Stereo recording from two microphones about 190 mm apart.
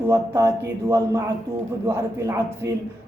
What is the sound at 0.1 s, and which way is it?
Speech, 15° right (ahead or behind).